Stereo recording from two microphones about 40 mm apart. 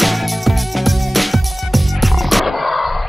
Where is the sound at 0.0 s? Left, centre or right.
Centre.